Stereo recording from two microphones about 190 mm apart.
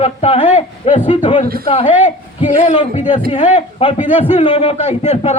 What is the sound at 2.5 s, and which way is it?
A man's voice, 30° left (ahead or behind).